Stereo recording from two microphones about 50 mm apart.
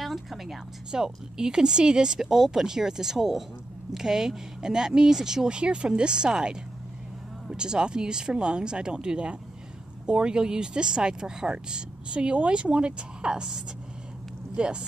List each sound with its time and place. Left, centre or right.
0.0 s speech: centre